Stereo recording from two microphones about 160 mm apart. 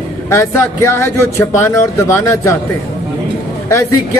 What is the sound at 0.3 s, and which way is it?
Speech, 15° left (ahead or behind).